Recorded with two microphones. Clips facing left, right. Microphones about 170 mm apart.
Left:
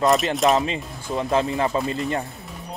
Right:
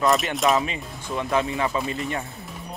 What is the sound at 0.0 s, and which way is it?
Speech, centre (ahead or behind).